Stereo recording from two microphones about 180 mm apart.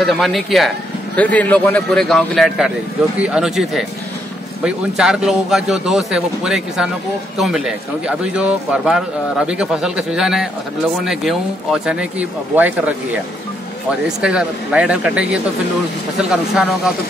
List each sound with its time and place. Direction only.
0.0 s a man's voice: centre (ahead or behind)